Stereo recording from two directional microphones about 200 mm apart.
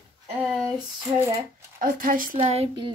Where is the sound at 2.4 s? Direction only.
30° right (ahead or behind).